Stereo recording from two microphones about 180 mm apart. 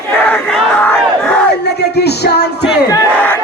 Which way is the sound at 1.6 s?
65° left (ahead or behind).